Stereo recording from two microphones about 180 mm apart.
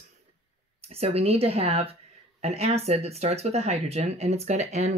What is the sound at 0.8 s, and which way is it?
Speech, 35° right (ahead or behind).